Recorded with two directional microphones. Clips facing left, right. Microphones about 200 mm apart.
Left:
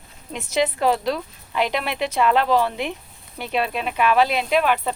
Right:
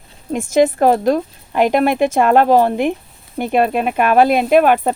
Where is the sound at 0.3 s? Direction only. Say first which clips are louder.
Right 9 dB; 50° right (ahead or behind).